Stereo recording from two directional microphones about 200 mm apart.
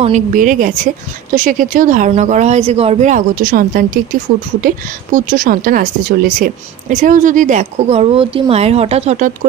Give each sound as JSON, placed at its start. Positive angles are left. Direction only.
{"t": 0.0, "sound": "speech", "side_deg": -40}